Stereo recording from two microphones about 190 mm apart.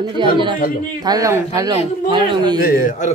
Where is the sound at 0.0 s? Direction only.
25° right (ahead or behind).